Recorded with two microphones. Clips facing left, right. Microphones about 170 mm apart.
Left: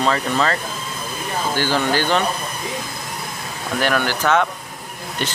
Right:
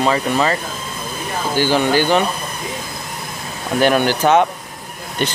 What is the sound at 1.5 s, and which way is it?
Speech, 15° right (ahead or behind).